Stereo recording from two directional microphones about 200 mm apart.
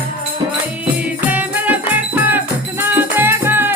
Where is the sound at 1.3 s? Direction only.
10° right (ahead or behind).